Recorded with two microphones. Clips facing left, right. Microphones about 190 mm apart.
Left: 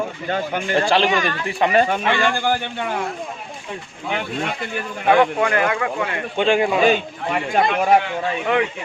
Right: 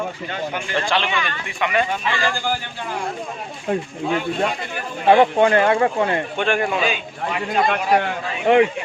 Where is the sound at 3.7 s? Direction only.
45° right (ahead or behind).